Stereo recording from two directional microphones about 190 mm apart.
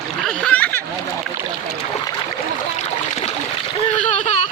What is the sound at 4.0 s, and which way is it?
Boat, 40° left (ahead or behind).